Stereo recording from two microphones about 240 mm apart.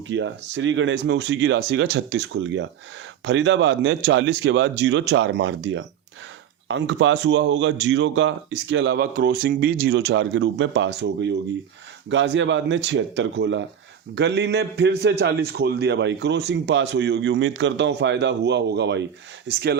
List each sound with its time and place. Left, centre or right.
0.1 s a man's voice: right